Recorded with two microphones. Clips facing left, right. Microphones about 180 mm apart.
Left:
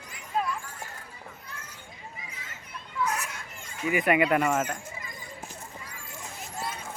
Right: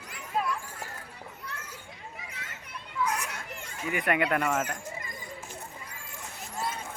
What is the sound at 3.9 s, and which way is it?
Speech, 5° left (ahead or behind).